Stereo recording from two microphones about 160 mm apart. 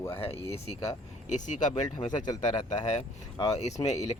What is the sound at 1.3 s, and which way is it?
Speech, 50° left (ahead or behind).